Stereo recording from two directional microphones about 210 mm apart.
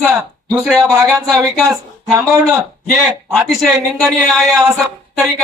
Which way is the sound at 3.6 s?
Centre (ahead or behind).